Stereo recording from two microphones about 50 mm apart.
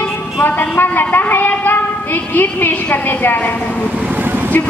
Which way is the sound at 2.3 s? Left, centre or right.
Left.